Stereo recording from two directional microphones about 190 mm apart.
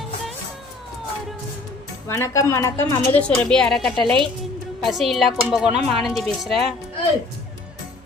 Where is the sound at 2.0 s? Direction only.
15° left (ahead or behind).